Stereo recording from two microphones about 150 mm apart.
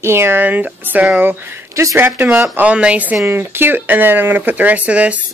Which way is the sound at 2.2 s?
5° right (ahead or behind).